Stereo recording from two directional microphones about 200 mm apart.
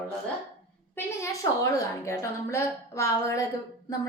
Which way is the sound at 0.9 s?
15° left (ahead or behind).